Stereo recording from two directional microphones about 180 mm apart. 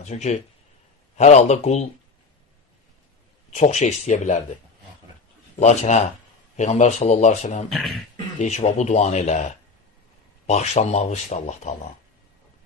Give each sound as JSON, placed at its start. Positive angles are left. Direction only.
{"t": 0.0, "sound": "speech", "side_deg": 40}
{"t": 3.4, "sound": "speech", "side_deg": 40}
{"t": 5.6, "sound": "speech", "side_deg": 40}